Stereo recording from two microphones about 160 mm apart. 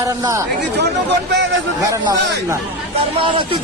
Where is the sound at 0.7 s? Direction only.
90° right.